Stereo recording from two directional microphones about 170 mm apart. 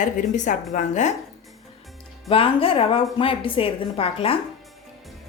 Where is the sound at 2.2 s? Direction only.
35° left (ahead or behind).